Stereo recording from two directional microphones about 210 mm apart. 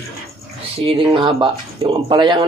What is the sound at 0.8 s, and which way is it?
Speech, 25° right (ahead or behind).